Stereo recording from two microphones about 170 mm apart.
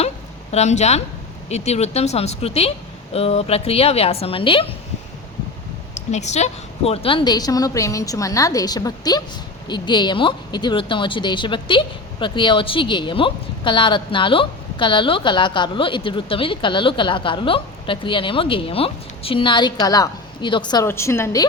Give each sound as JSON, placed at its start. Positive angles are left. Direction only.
{"t": 0.5, "sound": "speech", "side_deg": 40}
{"t": 5.9, "sound": "speech", "side_deg": 40}
{"t": 20.8, "sound": "a woman's voice", "side_deg": 15}